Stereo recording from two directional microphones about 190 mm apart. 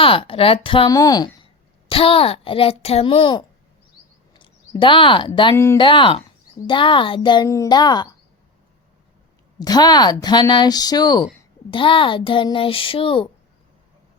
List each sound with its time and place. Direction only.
0.0 s speech: 30° left (ahead or behind)
9.6 s speech: 20° left (ahead or behind)